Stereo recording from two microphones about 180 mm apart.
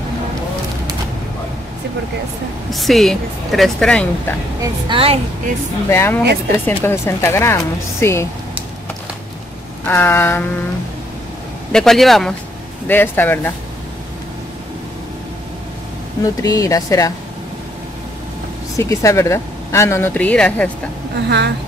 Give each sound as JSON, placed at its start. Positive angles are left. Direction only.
{"t": 2.7, "sound": "speech", "side_deg": 0}
{"t": 4.6, "sound": "a woman's voice", "side_deg": -30}
{"t": 5.9, "sound": "speech", "side_deg": 15}
{"t": 9.8, "sound": "speech", "side_deg": 10}
{"t": 11.7, "sound": "speech", "side_deg": 0}
{"t": 16.2, "sound": "speech", "side_deg": 20}
{"t": 18.8, "sound": "speech", "side_deg": 15}
{"t": 21.3, "sound": "a woman's voice", "side_deg": -70}